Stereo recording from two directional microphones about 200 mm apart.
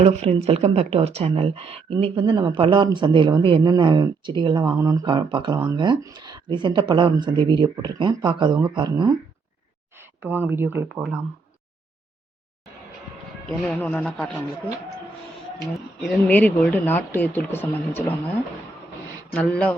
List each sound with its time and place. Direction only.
0.0 s a woman's voice: 30° right (ahead or behind)
10.2 s speech: 10° right (ahead or behind)
13.7 s speech: 10° left (ahead or behind)
16.2 s speech: 5° left (ahead or behind)
19.3 s speech: 5° left (ahead or behind)